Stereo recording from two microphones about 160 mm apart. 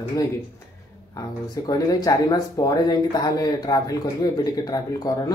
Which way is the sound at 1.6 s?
20° left (ahead or behind).